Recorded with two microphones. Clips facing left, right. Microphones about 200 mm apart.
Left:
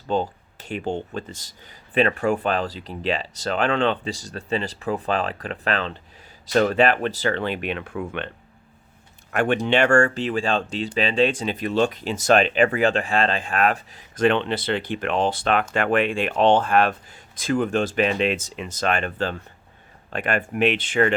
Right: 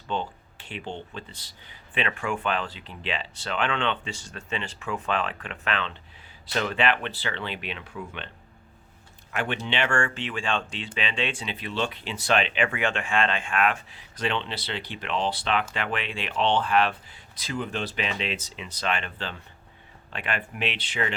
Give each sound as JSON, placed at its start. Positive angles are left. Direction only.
{"t": 0.1, "sound": "speech", "side_deg": 40}
{"t": 9.3, "sound": "speech", "side_deg": 50}